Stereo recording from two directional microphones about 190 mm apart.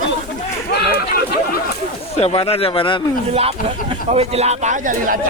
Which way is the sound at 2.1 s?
30° left (ahead or behind).